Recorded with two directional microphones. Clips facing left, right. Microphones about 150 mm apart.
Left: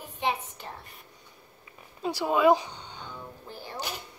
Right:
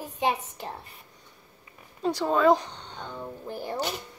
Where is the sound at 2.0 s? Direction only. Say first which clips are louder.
Right 1 dB; 10° left (ahead or behind).